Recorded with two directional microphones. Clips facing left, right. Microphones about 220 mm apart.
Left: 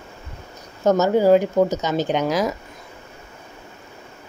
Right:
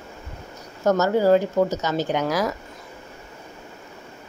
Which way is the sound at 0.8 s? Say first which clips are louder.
Left 2 dB; 20° left (ahead or behind).